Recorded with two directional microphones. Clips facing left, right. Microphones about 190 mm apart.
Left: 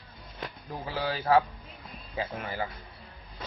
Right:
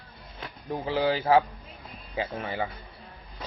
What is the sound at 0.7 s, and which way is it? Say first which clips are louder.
Speech: right 7 dB; 30° right (ahead or behind).